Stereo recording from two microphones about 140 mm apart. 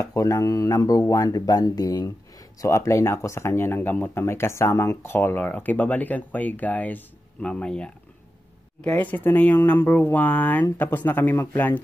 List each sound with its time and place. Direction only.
0.0 s speech: 20° left (ahead or behind)